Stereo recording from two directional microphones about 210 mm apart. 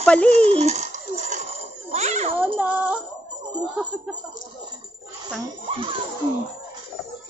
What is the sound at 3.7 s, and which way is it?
Speech, 5° right (ahead or behind).